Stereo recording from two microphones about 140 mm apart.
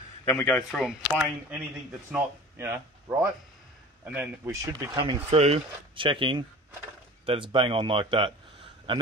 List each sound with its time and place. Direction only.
0.2 s a man's voice: 20° left (ahead or behind)
0.5 s speech: centre (ahead or behind)
2.1 s speech: 15° right (ahead or behind)
5.0 s speech: 45° right (ahead or behind)